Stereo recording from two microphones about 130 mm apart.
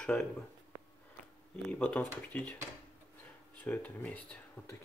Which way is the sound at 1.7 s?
10° left (ahead or behind).